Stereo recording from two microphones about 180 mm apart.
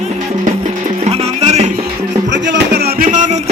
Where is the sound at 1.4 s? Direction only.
35° right (ahead or behind).